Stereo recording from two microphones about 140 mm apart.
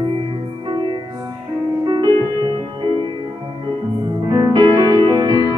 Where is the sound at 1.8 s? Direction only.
35° right (ahead or behind).